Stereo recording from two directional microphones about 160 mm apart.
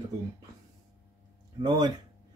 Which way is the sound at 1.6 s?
25° right (ahead or behind).